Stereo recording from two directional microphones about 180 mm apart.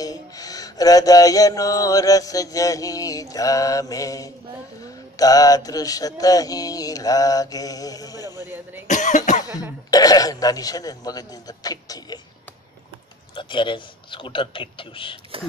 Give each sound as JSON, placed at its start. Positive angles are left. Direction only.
{"t": 0.0, "sound": "mantra", "side_deg": 20}
{"t": 8.4, "sound": "speech", "side_deg": -10}
{"t": 8.8, "sound": "cough", "side_deg": 45}
{"t": 9.4, "sound": "mantra", "side_deg": 20}
{"t": 13.3, "sound": "mantra", "side_deg": 25}